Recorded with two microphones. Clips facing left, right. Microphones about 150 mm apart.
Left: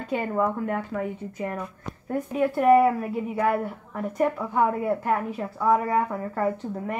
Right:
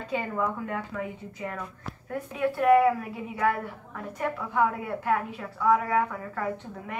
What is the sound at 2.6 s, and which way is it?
A woman's voice, 30° left (ahead or behind).